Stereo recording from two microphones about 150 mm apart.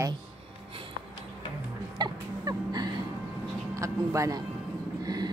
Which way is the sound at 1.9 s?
25° right (ahead or behind).